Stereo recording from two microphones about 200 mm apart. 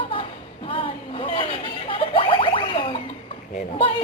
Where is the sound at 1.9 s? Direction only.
25° left (ahead or behind).